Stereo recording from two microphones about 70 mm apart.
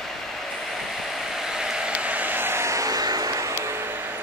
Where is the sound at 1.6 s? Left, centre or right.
Centre; by 3.5 s right.